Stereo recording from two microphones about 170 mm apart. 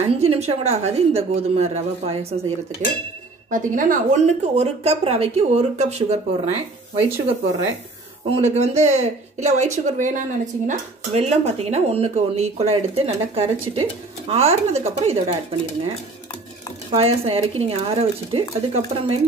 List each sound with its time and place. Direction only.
0.2 s speech: 35° right (ahead or behind)
3.4 s speech: 50° right (ahead or behind)
8.3 s speech: 40° right (ahead or behind)
16.9 s speech: 35° right (ahead or behind)